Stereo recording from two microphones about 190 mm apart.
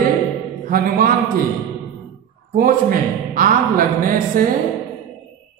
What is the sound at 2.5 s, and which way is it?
Speech, 45° right (ahead or behind).